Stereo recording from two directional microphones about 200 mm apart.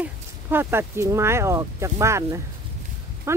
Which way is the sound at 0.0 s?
10° right (ahead or behind).